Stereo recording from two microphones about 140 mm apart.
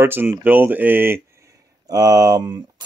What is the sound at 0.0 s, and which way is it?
Speech, 15° right (ahead or behind).